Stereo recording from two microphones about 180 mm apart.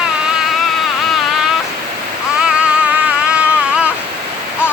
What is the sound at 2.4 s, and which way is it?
Music, 5° right (ahead or behind).